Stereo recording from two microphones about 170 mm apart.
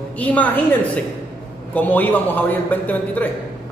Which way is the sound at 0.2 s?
10° left (ahead or behind).